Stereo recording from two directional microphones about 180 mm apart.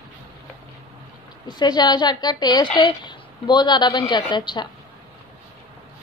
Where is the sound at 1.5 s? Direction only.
25° left (ahead or behind).